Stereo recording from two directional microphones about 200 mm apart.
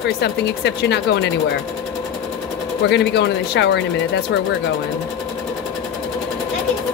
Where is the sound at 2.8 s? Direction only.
55° left (ahead or behind).